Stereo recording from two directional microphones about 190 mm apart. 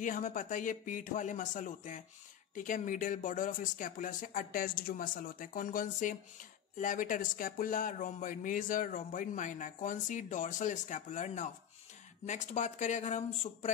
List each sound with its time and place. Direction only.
0.0 s speech: 45° left (ahead or behind)